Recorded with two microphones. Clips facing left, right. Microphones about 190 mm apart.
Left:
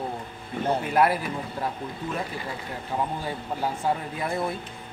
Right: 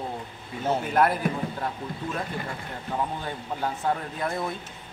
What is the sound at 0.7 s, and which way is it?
Speech, 5° left (ahead or behind).